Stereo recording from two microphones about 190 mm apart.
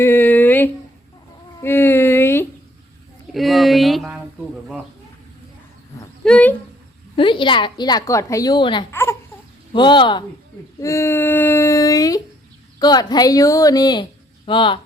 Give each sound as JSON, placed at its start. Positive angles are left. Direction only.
{"t": 0.0, "sound": "a sound", "side_deg": 10}
{"t": 3.3, "sound": "speech", "side_deg": 0}
{"t": 6.2, "sound": "speech", "side_deg": 5}
{"t": 7.2, "sound": "a woman's voice", "side_deg": 25}
{"t": 8.9, "sound": "a sound", "side_deg": 15}
{"t": 9.7, "sound": "a woman's voice", "side_deg": 25}